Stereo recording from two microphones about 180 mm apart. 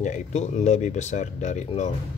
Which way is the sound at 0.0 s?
40° left (ahead or behind).